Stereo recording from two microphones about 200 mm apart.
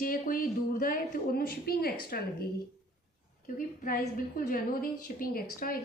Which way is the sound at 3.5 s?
45° left (ahead or behind).